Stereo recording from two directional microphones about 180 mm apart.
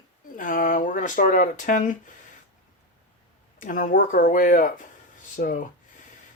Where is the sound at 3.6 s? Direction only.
45° left (ahead or behind).